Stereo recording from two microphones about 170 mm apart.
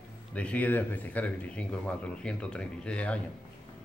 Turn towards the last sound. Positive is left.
turn(degrees=5)  # may be behind; listen again after turning